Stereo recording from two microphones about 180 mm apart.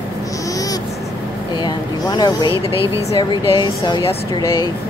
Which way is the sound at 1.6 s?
25° left (ahead or behind).